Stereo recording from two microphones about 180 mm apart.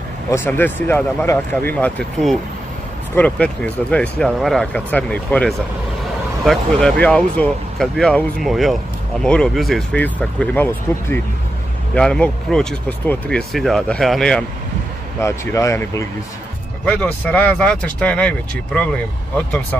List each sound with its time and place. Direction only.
0.3 s speech: 10° left (ahead or behind)
15.1 s speech: 15° left (ahead or behind)